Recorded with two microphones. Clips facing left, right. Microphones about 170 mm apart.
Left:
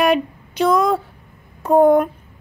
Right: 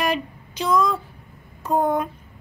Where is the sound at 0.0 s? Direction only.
60° left (ahead or behind).